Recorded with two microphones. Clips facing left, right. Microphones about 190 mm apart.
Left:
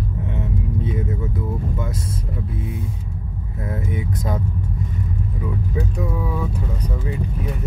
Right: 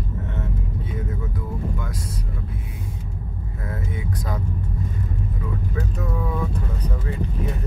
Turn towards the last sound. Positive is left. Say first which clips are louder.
# left 1 dB
turn(degrees=5)  # may be behind; listen again after turning